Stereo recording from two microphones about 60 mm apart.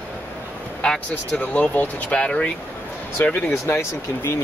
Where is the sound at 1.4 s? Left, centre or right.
Left.